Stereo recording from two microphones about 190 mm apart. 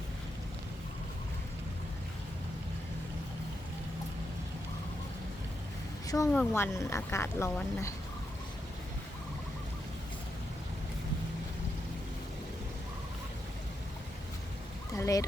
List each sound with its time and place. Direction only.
6.1 s a woman's voice: 15° left (ahead or behind)
14.9 s fowl: 15° left (ahead or behind)